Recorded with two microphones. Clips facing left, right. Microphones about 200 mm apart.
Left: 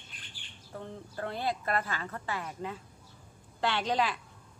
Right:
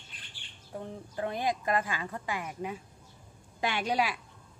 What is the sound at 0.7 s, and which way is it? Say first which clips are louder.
Speech: right 2 dB; 15° right (ahead or behind).